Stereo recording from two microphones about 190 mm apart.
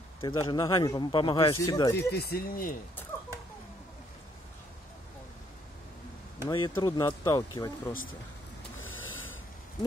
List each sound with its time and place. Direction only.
0.2 s speech: 25° left (ahead or behind)
2.0 s speech: 55° left (ahead or behind)
6.5 s speech: 25° left (ahead or behind)
6.9 s speech: 15° left (ahead or behind)
8.7 s snort: 90° left